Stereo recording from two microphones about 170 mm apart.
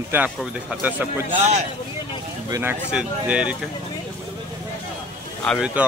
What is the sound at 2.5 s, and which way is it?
Speech, 10° right (ahead or behind).